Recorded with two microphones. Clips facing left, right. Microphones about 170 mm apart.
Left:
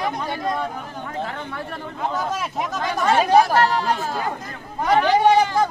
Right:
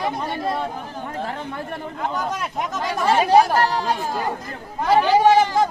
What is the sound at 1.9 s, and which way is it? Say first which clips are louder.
Speech: left 1 dB; 10° left (ahead or behind).